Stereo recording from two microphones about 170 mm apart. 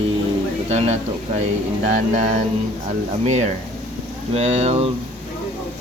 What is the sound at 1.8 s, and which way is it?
Music, 45° right (ahead or behind).